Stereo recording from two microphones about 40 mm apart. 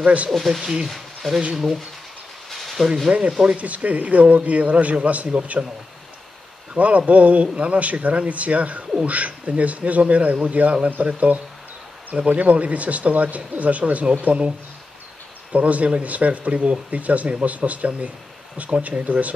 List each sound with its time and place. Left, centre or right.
0.0 s speech: right
0.5 s speech: centre
0.8 s a sound: centre
2.5 s a sound: centre
3.1 s speech: right
6.7 s speech: right
14.3 s speech: right
15.5 s speech: right